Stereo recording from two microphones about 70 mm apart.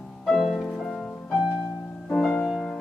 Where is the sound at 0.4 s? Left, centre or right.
Centre.